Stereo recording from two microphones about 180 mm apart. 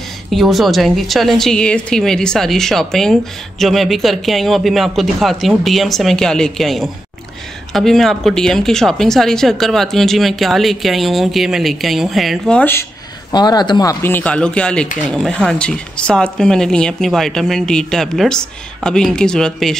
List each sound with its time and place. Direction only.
0.3 s a woman's voice: centre (ahead or behind)
13.3 s speech: 25° left (ahead or behind)
14.0 s a woman's voice: 10° left (ahead or behind)